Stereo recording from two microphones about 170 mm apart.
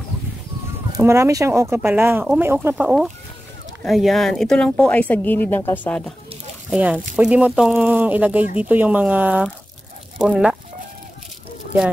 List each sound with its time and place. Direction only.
0.9 s speech: 15° right (ahead or behind); by 6.1 s 10° left (ahead or behind)
6.7 s speech: 10° right (ahead or behind)